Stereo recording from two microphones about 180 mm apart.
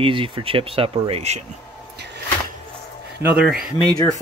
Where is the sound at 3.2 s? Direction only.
5° right (ahead or behind).